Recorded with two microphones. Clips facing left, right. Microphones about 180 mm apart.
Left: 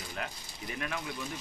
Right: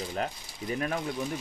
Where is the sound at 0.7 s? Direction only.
40° right (ahead or behind).